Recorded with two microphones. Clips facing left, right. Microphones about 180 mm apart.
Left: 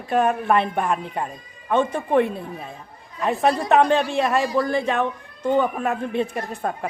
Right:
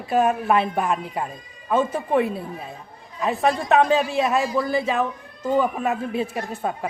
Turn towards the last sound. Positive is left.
turn(degrees=-5)  # may be behind; listen again after turning